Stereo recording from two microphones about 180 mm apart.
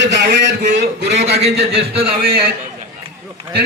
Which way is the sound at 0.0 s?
75° right (ahead or behind).